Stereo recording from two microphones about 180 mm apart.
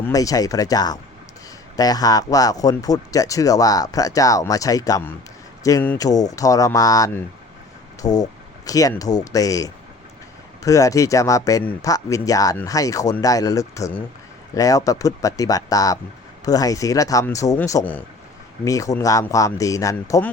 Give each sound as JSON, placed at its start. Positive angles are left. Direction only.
{"t": 0.0, "sound": "speech", "side_deg": 20}